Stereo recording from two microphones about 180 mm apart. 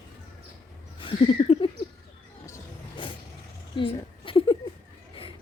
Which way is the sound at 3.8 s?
30° left (ahead or behind).